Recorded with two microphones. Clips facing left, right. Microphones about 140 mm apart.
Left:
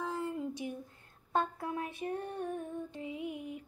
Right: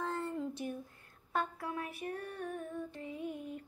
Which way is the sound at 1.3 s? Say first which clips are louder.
Left 3 dB; 25° left (ahead or behind).